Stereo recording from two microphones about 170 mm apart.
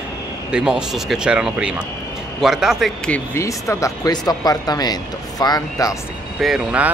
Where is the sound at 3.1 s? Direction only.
15° left (ahead or behind).